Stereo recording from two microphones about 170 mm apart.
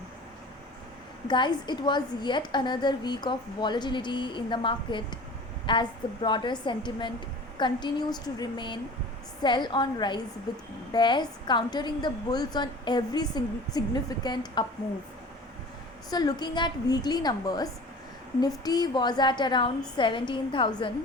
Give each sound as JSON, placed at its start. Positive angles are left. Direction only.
{"t": 1.3, "sound": "a woman's voice", "side_deg": 25}
{"t": 16.0, "sound": "a woman's voice", "side_deg": 25}